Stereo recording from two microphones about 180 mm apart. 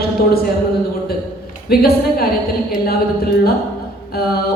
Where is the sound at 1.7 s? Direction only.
60° left (ahead or behind).